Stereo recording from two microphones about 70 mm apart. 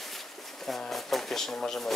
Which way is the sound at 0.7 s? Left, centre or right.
Centre.